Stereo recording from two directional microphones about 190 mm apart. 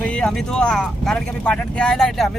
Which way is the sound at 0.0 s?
5° left (ahead or behind).